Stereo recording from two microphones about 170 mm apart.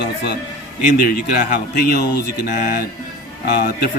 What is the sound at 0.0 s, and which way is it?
Speech, 90° left.